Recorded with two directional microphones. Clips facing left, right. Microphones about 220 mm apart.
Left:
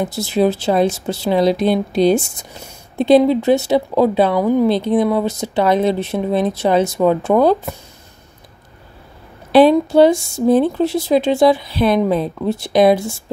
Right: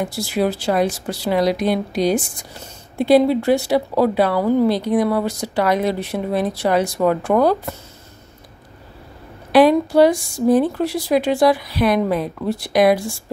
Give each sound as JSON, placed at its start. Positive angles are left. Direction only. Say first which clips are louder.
{"t": 0.0, "sound": "speech", "louder": "left 4 dB", "side_deg": 25}
{"t": 9.5, "sound": "speech", "louder": "left 2 dB", "side_deg": 25}